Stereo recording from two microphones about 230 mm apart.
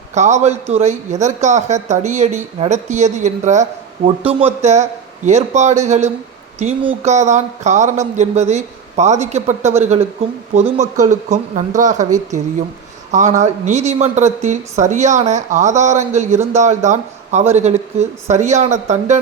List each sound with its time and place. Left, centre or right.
0.1 s speech: right